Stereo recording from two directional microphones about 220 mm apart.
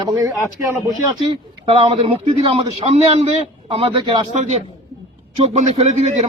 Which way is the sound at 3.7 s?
25° right (ahead or behind).